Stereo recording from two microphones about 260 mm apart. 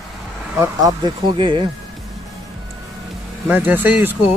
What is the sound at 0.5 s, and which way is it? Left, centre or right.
Speech, centre.